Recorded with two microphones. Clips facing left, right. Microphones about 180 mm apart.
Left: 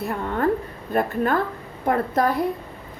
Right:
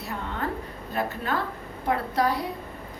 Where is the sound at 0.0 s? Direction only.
55° left (ahead or behind).